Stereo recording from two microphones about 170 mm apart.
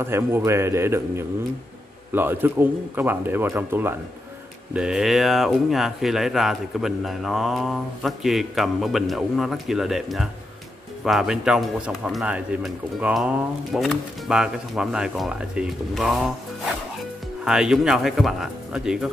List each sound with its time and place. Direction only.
0.0 s speech: 15° right (ahead or behind)
17.5 s speech: 5° right (ahead or behind)